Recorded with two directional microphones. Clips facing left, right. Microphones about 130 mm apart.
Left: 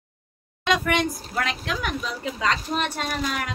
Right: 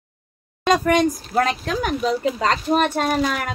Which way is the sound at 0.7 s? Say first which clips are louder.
Right 6 dB; 40° right (ahead or behind).